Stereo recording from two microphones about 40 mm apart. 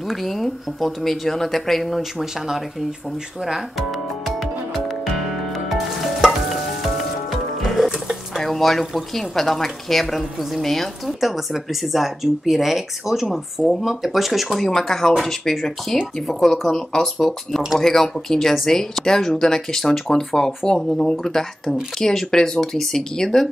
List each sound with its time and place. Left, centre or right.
0.1 s speech: centre
2.0 s speech: centre
4.4 s music: centre
5.7 s frying: centre
8.4 s speech: centre
14.7 s speech: centre